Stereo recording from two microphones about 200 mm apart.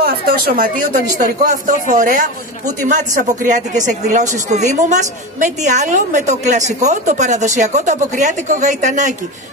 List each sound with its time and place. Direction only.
0.0 s speech: 50° right (ahead or behind)